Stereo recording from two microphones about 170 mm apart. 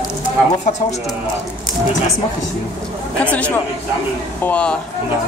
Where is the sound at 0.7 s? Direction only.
45° left (ahead or behind).